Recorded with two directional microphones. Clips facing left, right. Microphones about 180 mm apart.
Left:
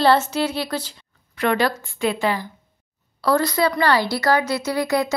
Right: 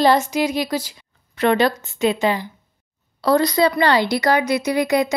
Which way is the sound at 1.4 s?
25° right (ahead or behind).